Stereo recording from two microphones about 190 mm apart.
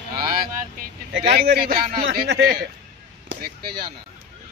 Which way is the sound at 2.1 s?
65° right (ahead or behind).